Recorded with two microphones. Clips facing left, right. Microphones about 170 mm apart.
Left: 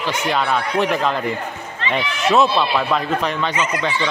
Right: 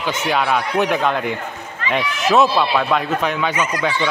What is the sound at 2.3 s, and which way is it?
Speech, centre (ahead or behind).